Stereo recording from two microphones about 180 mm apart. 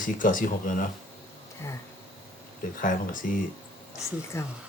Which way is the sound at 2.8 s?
45° left (ahead or behind).